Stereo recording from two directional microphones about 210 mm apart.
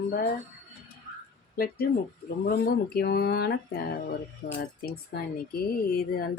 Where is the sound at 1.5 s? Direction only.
45° left (ahead or behind).